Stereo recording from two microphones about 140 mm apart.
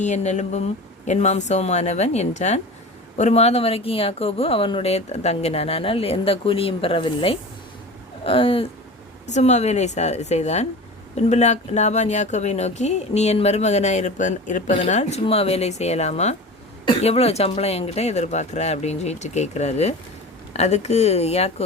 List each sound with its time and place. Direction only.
0.0 s speech: 55° left (ahead or behind); by 7.3 s 40° left (ahead or behind)
8.2 s a sound: 40° left (ahead or behind)
9.3 s speech: 50° left (ahead or behind)